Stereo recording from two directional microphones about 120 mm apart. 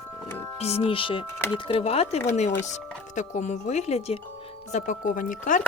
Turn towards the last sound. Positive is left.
turn(degrees=90)